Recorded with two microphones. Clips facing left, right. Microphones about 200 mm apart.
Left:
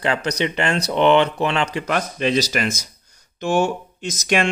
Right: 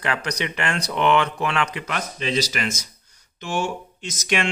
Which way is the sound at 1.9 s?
50° left (ahead or behind).